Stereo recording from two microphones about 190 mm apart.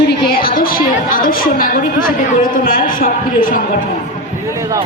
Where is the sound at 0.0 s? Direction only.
55° left (ahead or behind).